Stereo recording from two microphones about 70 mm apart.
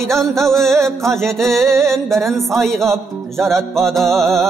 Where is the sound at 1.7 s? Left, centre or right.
Right.